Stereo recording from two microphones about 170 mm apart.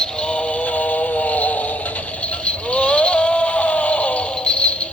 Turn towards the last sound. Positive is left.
turn(degrees=5)  # may be behind; listen again after turning